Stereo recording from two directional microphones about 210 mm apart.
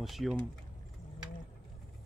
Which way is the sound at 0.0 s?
Centre (ahead or behind).